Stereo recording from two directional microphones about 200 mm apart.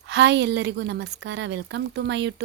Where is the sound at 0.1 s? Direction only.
60° right (ahead or behind).